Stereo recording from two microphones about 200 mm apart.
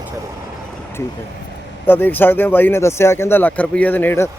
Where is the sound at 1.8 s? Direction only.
10° left (ahead or behind).